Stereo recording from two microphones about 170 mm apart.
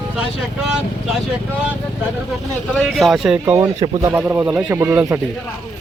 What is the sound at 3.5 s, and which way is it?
Speech, 20° right (ahead or behind).